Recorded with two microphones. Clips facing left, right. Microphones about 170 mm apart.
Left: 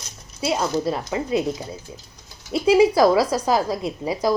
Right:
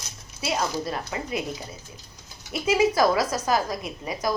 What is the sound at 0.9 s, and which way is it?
Speech, 25° left (ahead or behind).